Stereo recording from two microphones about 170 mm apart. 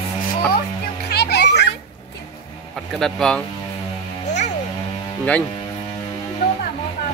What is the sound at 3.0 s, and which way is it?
Speech, 5° left (ahead or behind).